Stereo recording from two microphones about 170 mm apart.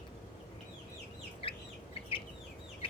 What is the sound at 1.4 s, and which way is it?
Chicken, 35° left (ahead or behind).